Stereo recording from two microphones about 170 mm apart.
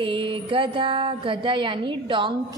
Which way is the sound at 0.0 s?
30° right (ahead or behind).